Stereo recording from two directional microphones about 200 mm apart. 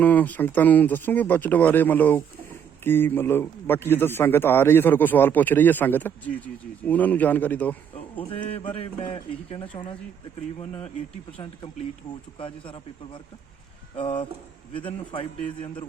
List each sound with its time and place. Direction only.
0.0 s a man's voice: 10° left (ahead or behind)
8.3 s speech: 30° left (ahead or behind)
12.4 s speech: 25° left (ahead or behind)
14.7 s speech: 25° left (ahead or behind)